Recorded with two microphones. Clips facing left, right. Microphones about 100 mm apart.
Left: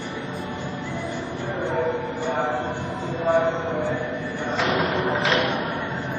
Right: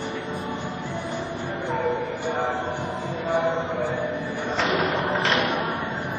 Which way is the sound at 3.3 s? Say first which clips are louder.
Left 3 dB; 15° right (ahead or behind).